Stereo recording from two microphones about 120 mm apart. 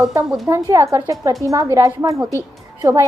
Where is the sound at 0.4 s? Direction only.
25° right (ahead or behind).